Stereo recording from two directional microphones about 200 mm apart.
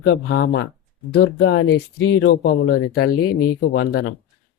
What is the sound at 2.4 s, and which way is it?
Speech, 50° left (ahead or behind).